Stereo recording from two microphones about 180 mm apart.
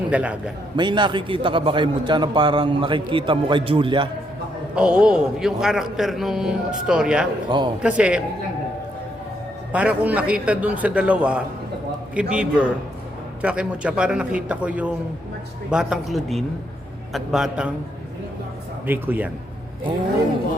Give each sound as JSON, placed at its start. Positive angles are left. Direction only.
{"t": 0.1, "sound": "a man's voice", "side_deg": -5}
{"t": 0.8, "sound": "a man's voice", "side_deg": -25}
{"t": 4.7, "sound": "a man's voice", "side_deg": -5}
{"t": 9.7, "sound": "a man's voice", "side_deg": -10}
{"t": 18.9, "sound": "a man's voice", "side_deg": -10}